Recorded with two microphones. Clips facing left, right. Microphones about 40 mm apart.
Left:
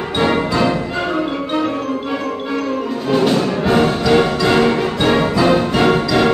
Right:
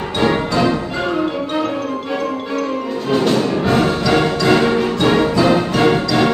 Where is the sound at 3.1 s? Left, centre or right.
Centre.